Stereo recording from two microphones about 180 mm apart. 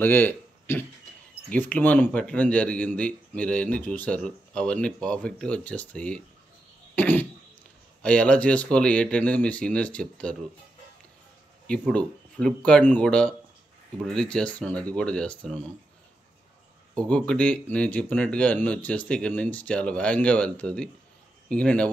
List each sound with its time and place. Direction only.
0.0 s speech: 10° left (ahead or behind)
7.0 s cough: 10° left (ahead or behind)
8.0 s speech: 5° left (ahead or behind)
11.6 s speech: 5° left (ahead or behind)
16.9 s speech: 5° left (ahead or behind)